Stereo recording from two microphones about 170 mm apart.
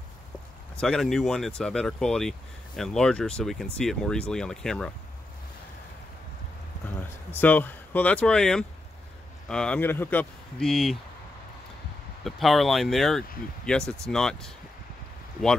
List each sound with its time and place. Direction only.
0.7 s speech: 5° left (ahead or behind)
7.2 s speech: 10° left (ahead or behind)
12.2 s speech: centre (ahead or behind)